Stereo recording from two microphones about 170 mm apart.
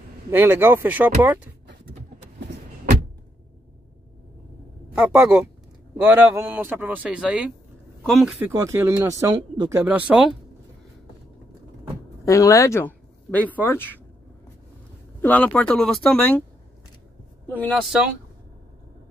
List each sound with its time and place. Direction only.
0.3 s speech: 10° right (ahead or behind)
4.9 s speech: 5° right (ahead or behind)
8.5 s speech: 15° right (ahead or behind)
9.8 s speech: 10° right (ahead or behind)
12.3 s speech: 20° left (ahead or behind)
15.2 s speech: 10° left (ahead or behind)